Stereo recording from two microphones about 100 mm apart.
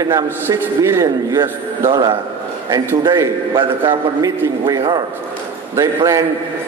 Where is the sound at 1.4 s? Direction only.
40° right (ahead or behind).